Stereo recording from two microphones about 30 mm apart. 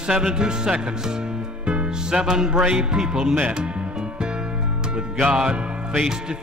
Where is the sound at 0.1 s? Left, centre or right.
Right.